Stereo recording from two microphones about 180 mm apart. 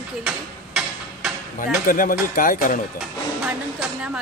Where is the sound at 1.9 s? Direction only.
50° left (ahead or behind).